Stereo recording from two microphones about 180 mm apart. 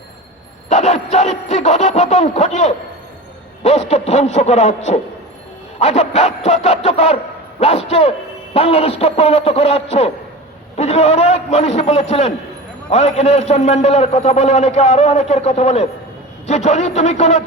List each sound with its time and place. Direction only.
0.7 s a man's voice: 40° left (ahead or behind)